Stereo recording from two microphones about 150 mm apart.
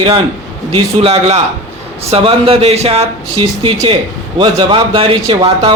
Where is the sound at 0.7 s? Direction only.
40° right (ahead or behind).